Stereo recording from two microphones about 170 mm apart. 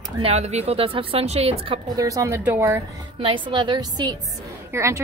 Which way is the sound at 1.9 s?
20° right (ahead or behind).